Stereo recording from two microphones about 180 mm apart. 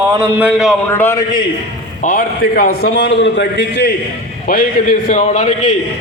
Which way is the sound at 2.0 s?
50° left (ahead or behind).